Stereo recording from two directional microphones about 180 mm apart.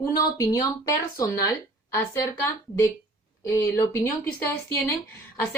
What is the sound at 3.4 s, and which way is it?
Speech, 15° left (ahead or behind).